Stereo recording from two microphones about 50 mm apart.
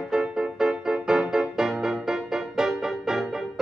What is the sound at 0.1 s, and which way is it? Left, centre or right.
Music, centre.